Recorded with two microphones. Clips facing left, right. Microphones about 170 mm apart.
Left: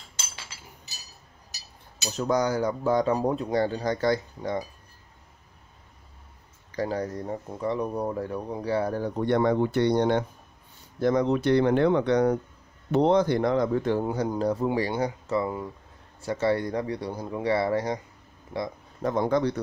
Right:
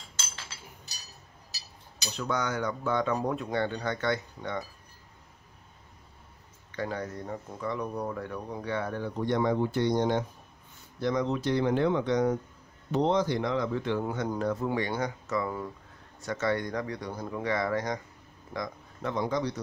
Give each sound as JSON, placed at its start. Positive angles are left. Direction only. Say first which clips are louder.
{"t": 2.0, "sound": "speech", "louder": "left 6 dB", "side_deg": 40}
{"t": 6.7, "sound": "speech", "louder": "left 5 dB", "side_deg": 35}
{"t": 9.2, "sound": "speech", "louder": "left 4 dB", "side_deg": 60}
{"t": 11.0, "sound": "speech", "louder": "left 5 dB", "side_deg": 50}
{"t": 14.4, "sound": "speech", "louder": "left 4 dB", "side_deg": 30}
{"t": 19.1, "sound": "speech", "louder": "left 6 dB", "side_deg": 55}